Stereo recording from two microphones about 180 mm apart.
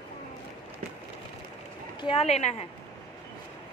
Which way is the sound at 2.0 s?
30° left (ahead or behind).